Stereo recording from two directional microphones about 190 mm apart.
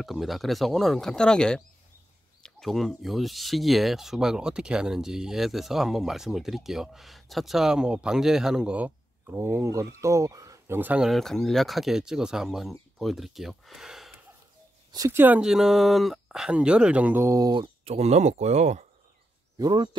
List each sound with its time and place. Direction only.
0.0 s speech: centre (ahead or behind)
14.9 s speech: 15° right (ahead or behind); by 18.9 s 35° right (ahead or behind)
19.6 s speech: 20° right (ahead or behind)